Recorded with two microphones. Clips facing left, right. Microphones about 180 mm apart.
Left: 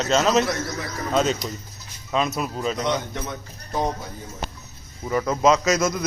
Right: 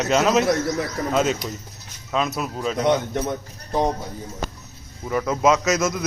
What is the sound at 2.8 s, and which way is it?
Speech, 45° right (ahead or behind).